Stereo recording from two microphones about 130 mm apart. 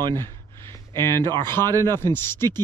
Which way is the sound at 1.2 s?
30° right (ahead or behind).